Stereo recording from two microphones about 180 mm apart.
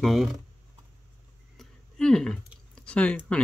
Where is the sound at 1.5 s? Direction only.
5° left (ahead or behind).